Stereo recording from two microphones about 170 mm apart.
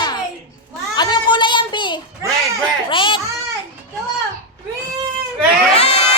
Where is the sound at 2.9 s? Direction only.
30° left (ahead or behind).